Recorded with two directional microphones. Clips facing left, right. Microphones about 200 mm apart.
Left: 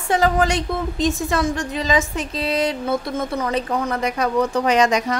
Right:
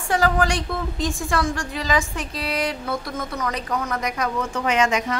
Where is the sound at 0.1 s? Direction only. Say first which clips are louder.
Left 3 dB; 20° left (ahead or behind).